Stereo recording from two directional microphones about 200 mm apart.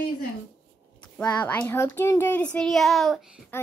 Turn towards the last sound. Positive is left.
turn(degrees=0)  # may be behind; listen again after turning